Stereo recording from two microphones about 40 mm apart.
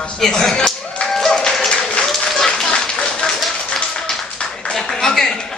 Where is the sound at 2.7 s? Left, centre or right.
Left.